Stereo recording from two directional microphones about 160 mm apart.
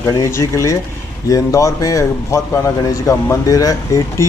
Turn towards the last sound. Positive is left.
turn(degrees=20)  # may be behind; listen again after turning